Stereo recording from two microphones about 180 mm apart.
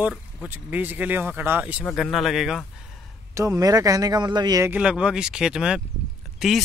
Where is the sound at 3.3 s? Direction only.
15° right (ahead or behind).